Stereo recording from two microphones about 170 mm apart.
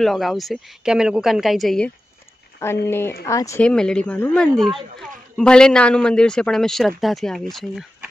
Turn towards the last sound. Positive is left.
turn(degrees=0)  # may be behind; listen again after turning